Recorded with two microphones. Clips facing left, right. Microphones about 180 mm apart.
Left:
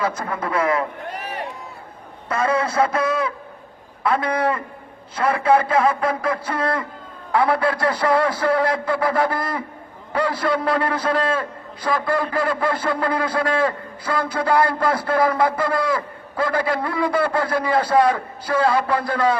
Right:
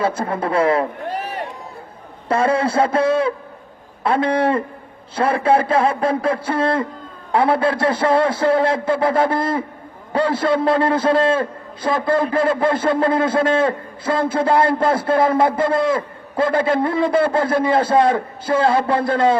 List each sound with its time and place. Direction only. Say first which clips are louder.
0.0 s a man's voice: right 4 dB; 30° right (ahead or behind)
2.3 s a man's voice: right 4 dB; 30° right (ahead or behind)